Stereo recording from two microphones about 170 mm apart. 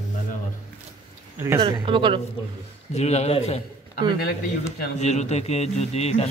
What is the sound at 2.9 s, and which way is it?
Speech, 40° left (ahead or behind).